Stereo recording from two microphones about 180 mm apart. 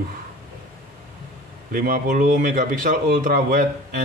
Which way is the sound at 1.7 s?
50° right (ahead or behind).